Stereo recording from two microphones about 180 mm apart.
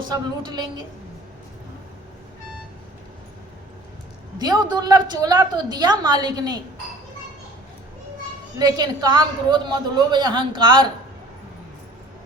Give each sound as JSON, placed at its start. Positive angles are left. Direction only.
{"t": 0.1, "sound": "a woman's voice", "side_deg": -20}
{"t": 4.4, "sound": "a woman's voice", "side_deg": -25}
{"t": 8.5, "sound": "a woman's voice", "side_deg": -20}